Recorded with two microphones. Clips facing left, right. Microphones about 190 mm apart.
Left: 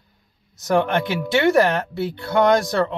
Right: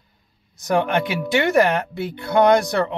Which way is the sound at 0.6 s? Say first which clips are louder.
Even; 15° right (ahead or behind).